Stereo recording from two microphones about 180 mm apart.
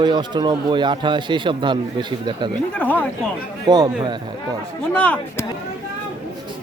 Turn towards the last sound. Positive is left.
turn(degrees=5)  # may be behind; listen again after turning